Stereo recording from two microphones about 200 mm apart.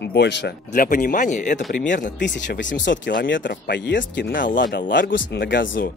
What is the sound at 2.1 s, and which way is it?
Speech, 65° left (ahead or behind).